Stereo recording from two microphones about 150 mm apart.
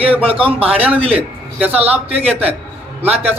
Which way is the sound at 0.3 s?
40° right (ahead or behind).